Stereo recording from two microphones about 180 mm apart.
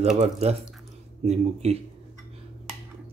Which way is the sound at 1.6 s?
35° right (ahead or behind).